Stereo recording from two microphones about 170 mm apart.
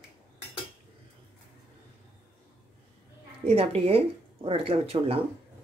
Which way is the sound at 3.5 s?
35° right (ahead or behind).